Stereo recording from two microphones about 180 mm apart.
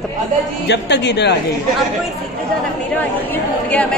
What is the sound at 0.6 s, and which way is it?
Speech, 70° left (ahead or behind).